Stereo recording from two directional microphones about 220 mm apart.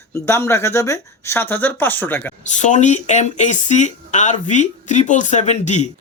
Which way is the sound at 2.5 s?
35° left (ahead or behind).